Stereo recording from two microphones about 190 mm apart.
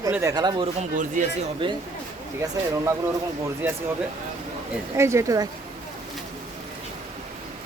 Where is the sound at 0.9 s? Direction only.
45° right (ahead or behind).